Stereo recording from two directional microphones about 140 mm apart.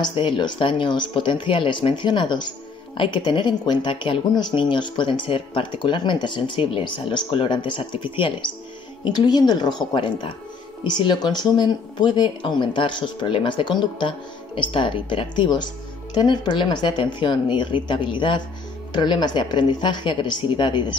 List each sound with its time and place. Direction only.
0.0 s speech: 35° left (ahead or behind)